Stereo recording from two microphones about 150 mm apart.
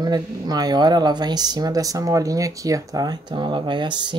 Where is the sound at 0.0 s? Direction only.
25° right (ahead or behind).